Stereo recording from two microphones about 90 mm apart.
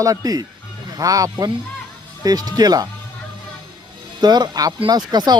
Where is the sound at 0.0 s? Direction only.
40° right (ahead or behind).